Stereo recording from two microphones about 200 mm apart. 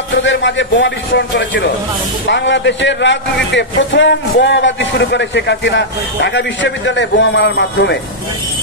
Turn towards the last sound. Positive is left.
turn(degrees=60)  # may be behind; listen again after turning